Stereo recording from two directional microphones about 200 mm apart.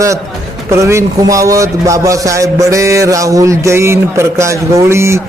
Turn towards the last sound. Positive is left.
turn(degrees=-15)  # may be behind; listen again after turning